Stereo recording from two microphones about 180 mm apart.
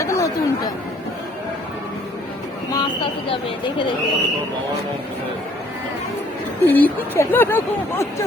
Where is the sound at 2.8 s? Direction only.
25° left (ahead or behind).